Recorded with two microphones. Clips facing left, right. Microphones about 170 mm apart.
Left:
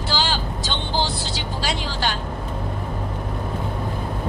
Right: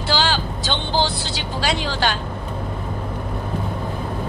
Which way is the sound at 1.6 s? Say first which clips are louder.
Right 4 dB; 75° right (ahead or behind).